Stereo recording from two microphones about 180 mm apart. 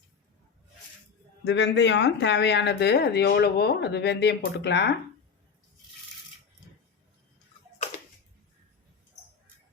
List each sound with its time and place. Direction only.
1.5 s speech: 80° left